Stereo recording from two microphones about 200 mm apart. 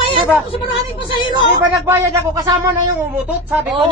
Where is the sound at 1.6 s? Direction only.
10° right (ahead or behind).